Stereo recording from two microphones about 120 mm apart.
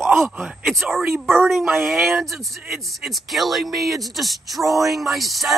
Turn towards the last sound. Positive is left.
turn(degrees=0)  # may be behind; listen again after turning